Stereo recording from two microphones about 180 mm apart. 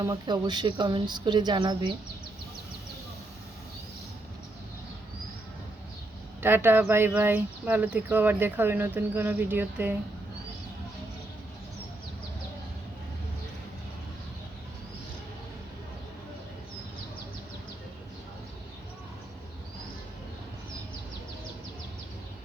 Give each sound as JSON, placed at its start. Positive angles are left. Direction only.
{"t": 0.0, "sound": "speech", "side_deg": -20}
{"t": 6.4, "sound": "speech", "side_deg": -10}